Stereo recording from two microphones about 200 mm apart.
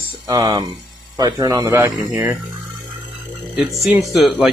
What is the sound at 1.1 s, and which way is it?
Speech, 20° right (ahead or behind).